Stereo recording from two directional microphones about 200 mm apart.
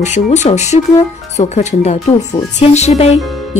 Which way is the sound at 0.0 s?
35° left (ahead or behind).